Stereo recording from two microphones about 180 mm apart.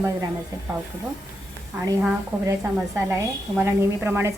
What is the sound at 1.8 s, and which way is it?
A woman's voice, 15° right (ahead or behind).